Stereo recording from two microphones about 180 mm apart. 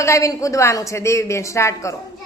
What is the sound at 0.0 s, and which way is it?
Speech, 20° left (ahead or behind).